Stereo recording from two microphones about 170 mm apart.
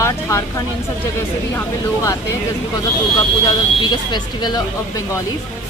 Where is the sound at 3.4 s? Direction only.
25° left (ahead or behind).